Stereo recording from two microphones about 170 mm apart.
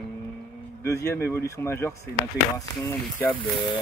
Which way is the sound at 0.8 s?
15° left (ahead or behind).